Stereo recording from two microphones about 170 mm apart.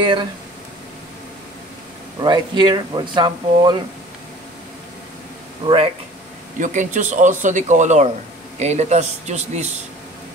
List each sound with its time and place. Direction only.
0.0 s speech: 25° right (ahead or behind)
2.1 s speech: 25° right (ahead or behind)
6.6 s a man's voice: 45° right (ahead or behind)